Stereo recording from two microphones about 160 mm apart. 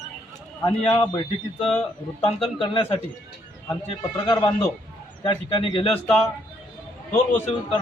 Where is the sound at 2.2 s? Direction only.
35° left (ahead or behind).